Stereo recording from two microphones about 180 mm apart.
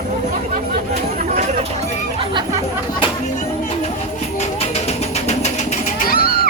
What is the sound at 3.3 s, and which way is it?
Music, 35° left (ahead or behind).